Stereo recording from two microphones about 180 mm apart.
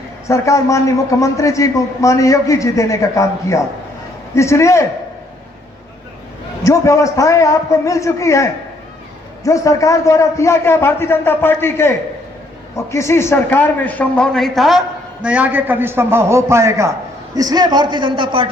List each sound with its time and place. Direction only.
0.3 s a man's voice: 15° left (ahead or behind)
6.7 s a man's voice: 15° left (ahead or behind); by 18.4 s 30° right (ahead or behind)